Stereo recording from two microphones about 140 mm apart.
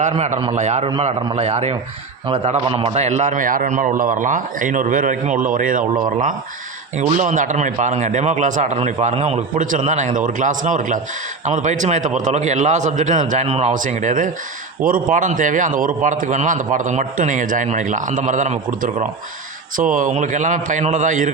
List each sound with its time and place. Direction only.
0.1 s a man's voice: 45° right (ahead or behind); by 5.8 s 75° right (ahead or behind)
7.2 s a man's voice: 60° right (ahead or behind)
9.6 s a man's voice: 65° right (ahead or behind)
14.8 s a man's voice: 80° right; by 19.0 s 55° right (ahead or behind)
19.7 s a man's voice: 70° right (ahead or behind)